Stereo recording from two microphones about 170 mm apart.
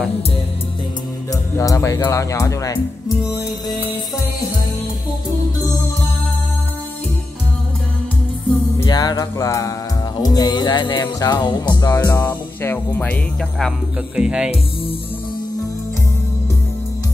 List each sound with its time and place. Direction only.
1.3 s speech: 20° left (ahead or behind)
8.7 s music: 20° left (ahead or behind)
12.0 s music: 15° left (ahead or behind)
12.6 s speech: 10° left (ahead or behind); by 14.5 s 5° right (ahead or behind)